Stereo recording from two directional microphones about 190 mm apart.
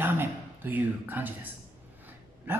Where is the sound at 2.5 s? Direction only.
10° right (ahead or behind).